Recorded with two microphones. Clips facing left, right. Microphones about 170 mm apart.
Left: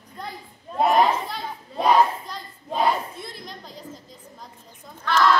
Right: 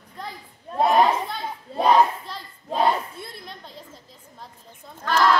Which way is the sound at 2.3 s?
Centre (ahead or behind).